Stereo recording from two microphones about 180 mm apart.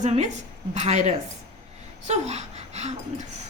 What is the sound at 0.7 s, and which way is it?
A woman's voice, 40° right (ahead or behind).